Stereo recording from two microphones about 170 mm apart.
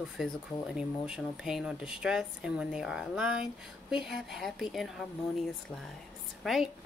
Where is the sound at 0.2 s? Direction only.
Centre (ahead or behind).